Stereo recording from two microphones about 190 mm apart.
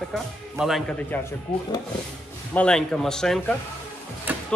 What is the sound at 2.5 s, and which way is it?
Speech, 5° left (ahead or behind).